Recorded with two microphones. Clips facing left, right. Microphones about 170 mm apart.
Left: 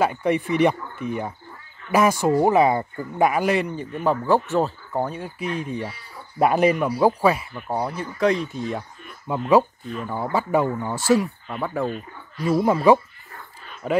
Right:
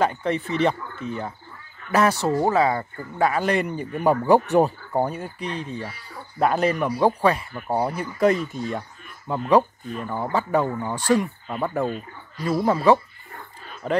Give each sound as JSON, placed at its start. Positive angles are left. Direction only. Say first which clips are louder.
{"t": 0.0, "sound": "speech", "louder": "left 2 dB", "side_deg": 10}
{"t": 3.6, "sound": "speech", "louder": "right 2 dB", "side_deg": -10}
{"t": 5.2, "sound": "speech", "louder": "left 2 dB", "side_deg": 10}
{"t": 7.5, "sound": "speech", "louder": "right 2 dB", "side_deg": -5}